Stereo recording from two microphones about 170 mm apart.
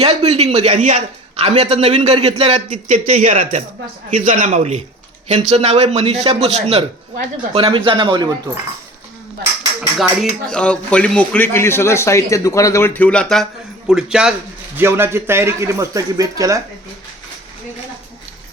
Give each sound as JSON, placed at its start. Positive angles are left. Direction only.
{"t": 0.0, "sound": "speech", "side_deg": -40}
{"t": 2.9, "sound": "speech", "side_deg": -50}
{"t": 10.0, "sound": "speech", "side_deg": 0}
{"t": 14.8, "sound": "speech", "side_deg": -15}